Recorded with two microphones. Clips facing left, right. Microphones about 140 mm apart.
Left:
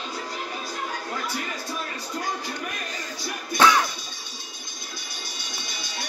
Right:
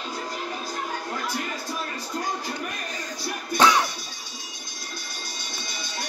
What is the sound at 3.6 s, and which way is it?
Music, 15° right (ahead or behind).